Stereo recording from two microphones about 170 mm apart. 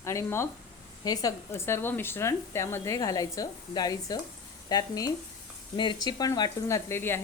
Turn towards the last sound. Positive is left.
turn(degrees=15)  # may be behind; listen again after turning